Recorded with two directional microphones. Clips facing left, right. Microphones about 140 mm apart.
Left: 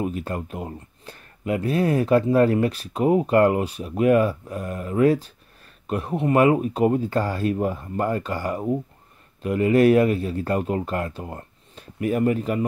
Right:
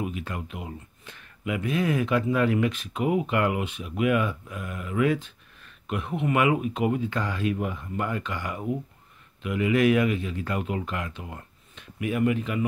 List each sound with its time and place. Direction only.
0.0 s speech: 40° left (ahead or behind)